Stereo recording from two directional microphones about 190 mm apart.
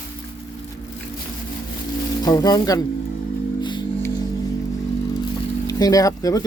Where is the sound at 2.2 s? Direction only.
20° left (ahead or behind).